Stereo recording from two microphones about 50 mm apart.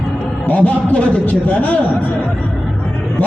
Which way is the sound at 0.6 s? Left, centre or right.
Left.